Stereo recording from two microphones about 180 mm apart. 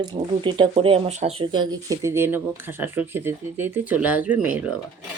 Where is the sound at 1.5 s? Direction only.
20° right (ahead or behind).